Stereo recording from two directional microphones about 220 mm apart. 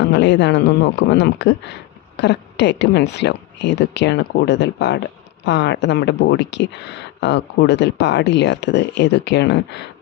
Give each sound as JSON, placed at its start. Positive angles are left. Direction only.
{"t": 0.0, "sound": "speech", "side_deg": 55}